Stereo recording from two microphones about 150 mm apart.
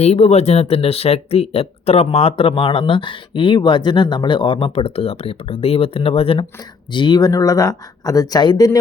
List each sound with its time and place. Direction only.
0.0 s speech: 45° left (ahead or behind); by 8.8 s 25° left (ahead or behind)